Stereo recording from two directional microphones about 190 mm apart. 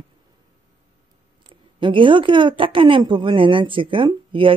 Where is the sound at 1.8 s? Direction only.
25° right (ahead or behind).